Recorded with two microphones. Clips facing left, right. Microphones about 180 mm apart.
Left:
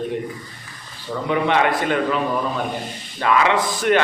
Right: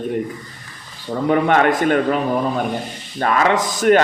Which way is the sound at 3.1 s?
45° right (ahead or behind).